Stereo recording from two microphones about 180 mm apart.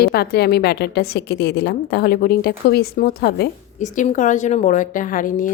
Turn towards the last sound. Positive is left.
turn(degrees=50)  # may be behind; listen again after turning